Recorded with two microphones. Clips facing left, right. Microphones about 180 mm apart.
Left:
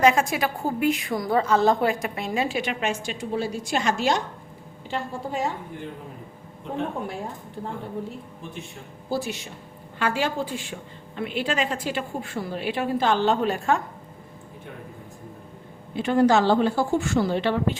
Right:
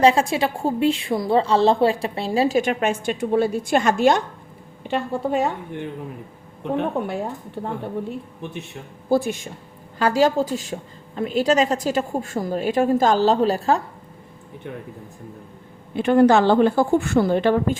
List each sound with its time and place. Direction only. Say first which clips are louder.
0.0 s a woman's voice: right 3 dB; 30° right (ahead or behind); by 4.2 s 50° right (ahead or behind)
4.9 s a woman's voice: right 7 dB; 65° right (ahead or behind)
6.7 s a woman's voice: right 6 dB; 65° right (ahead or behind)
9.0 s speech: right 8 dB; 55° right (ahead or behind)
10.0 s a woman's voice: right 7 dB; 40° right (ahead or behind)
16.0 s a woman's voice: right 4 dB; 60° right (ahead or behind)